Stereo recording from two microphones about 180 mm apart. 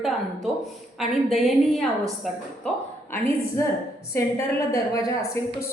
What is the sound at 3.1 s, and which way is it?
A woman's voice, 15° left (ahead or behind).